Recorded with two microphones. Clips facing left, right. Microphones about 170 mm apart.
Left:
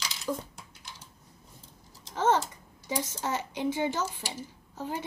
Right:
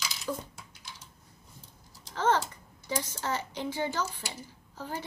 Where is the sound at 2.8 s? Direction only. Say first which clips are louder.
Left 1 dB; 10° left (ahead or behind).